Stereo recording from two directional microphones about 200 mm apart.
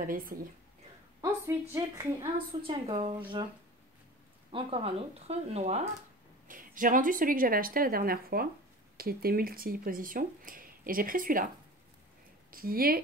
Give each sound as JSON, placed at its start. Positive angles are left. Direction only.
{"t": 0.0, "sound": "speech", "side_deg": -45}
{"t": 1.5, "sound": "a woman's voice", "side_deg": -15}
{"t": 2.3, "sound": "speech", "side_deg": -25}
{"t": 4.5, "sound": "speech", "side_deg": -25}
{"t": 12.4, "sound": "speech", "side_deg": -45}